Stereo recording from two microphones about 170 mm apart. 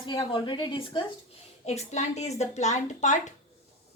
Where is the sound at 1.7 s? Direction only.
40° left (ahead or behind).